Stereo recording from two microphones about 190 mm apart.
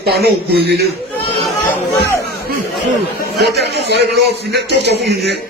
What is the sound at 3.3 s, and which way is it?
Speech, 60° right (ahead or behind).